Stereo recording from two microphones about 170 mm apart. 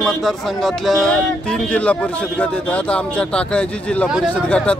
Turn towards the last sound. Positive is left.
turn(degrees=5)  # may be behind; listen again after turning